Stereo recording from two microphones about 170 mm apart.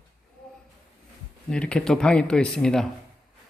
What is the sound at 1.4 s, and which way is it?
Speech, 5° left (ahead or behind).